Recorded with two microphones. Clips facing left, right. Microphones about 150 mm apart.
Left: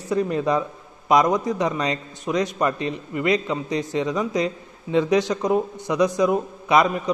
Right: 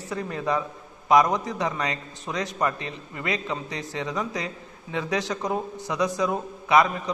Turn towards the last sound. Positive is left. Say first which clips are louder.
# left 2 dB
turn(degrees=20)  # may be behind; listen again after turning